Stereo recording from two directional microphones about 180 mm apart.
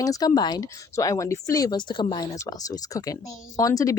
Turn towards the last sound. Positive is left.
turn(degrees=20)  # may be behind; listen again after turning